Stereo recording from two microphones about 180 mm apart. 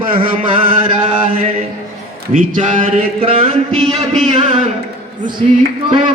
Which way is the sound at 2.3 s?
45° right (ahead or behind).